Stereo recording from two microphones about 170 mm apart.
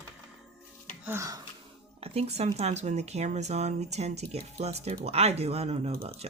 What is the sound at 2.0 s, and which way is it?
Speech, 35° right (ahead or behind).